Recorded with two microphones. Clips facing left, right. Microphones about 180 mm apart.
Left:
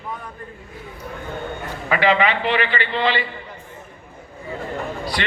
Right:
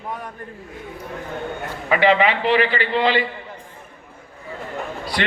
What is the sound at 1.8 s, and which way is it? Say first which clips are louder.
Speech: right 2 dB; 25° right (ahead or behind).